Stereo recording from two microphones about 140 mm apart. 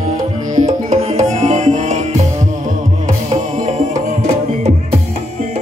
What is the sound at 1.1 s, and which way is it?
Music, 60° right (ahead or behind).